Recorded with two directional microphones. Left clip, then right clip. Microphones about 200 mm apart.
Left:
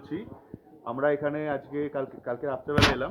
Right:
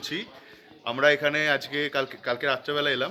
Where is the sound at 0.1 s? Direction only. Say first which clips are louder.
Right 3 dB; 40° right (ahead or behind).